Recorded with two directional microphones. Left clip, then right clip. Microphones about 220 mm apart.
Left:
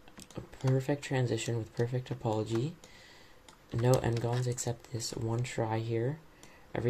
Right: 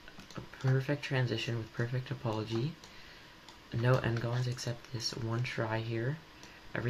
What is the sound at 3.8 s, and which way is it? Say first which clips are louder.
Speech: left 3 dB; 35° left (ahead or behind).